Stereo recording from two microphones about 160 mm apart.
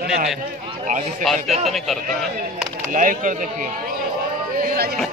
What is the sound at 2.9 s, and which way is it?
Speech, 55° right (ahead or behind).